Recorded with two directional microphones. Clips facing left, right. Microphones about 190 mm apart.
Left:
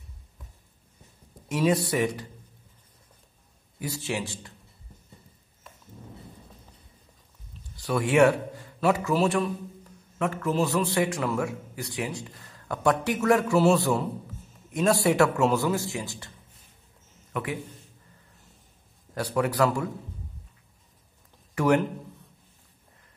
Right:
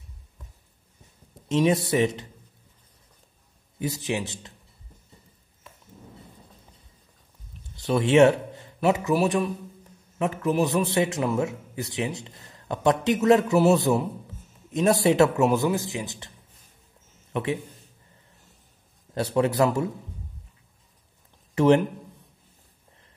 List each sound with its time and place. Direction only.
1.5 s a man's voice: 25° right (ahead or behind)
3.8 s a man's voice: 20° right (ahead or behind)
7.7 s a man's voice: 25° right (ahead or behind)
19.1 s a man's voice: 25° right (ahead or behind)
21.5 s a man's voice: 25° right (ahead or behind)